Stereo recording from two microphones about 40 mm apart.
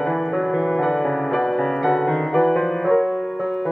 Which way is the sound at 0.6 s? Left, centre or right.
Centre.